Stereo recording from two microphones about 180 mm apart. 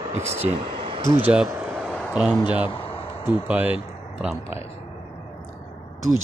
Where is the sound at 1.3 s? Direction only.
5° right (ahead or behind).